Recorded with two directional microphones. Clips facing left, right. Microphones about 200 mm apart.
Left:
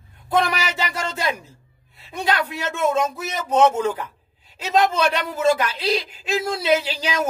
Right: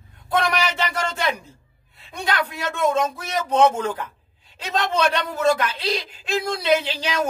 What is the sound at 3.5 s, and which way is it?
A man's voice, 10° left (ahead or behind).